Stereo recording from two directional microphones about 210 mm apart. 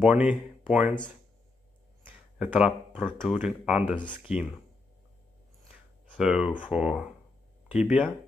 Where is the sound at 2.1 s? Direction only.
5° right (ahead or behind).